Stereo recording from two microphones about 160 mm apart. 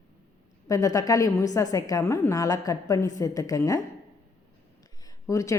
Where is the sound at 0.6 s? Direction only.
20° left (ahead or behind).